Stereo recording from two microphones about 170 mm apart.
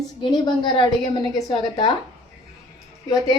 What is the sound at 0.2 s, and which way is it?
A woman's voice, 25° left (ahead or behind).